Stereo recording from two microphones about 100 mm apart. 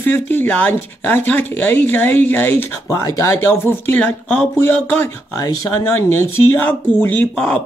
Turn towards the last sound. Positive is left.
turn(degrees=10)  # may be behind; listen again after turning